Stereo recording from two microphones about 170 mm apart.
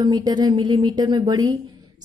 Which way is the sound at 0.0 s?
25° right (ahead or behind).